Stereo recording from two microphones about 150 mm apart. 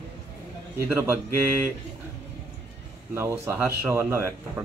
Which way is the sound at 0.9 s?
15° right (ahead or behind).